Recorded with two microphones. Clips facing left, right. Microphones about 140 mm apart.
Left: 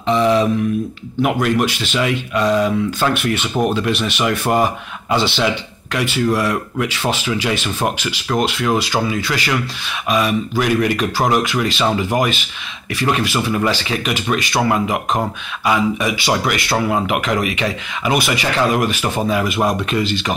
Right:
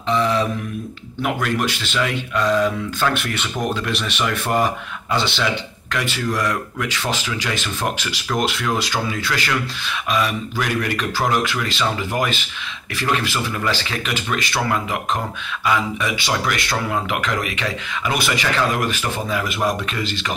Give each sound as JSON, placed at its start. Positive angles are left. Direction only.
{"t": 0.1, "sound": "a sound", "side_deg": 20}
{"t": 1.2, "sound": "speech", "side_deg": 15}
{"t": 6.3, "sound": "speech", "side_deg": 10}
{"t": 8.4, "sound": "speech", "side_deg": 0}